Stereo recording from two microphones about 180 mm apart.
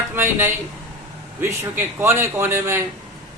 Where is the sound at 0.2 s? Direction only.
10° right (ahead or behind).